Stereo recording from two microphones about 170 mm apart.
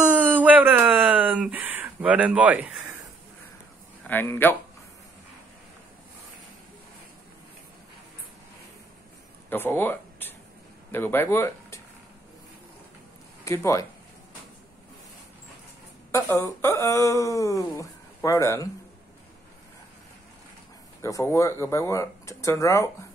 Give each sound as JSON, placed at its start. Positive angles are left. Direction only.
{"t": 0.0, "sound": "a sound", "side_deg": -10}
{"t": 4.1, "sound": "speech", "side_deg": 10}
{"t": 9.5, "sound": "speech", "side_deg": 10}
{"t": 13.4, "sound": "speech", "side_deg": 15}
{"t": 16.1, "sound": "speech", "side_deg": 15}
{"t": 21.0, "sound": "speech", "side_deg": 15}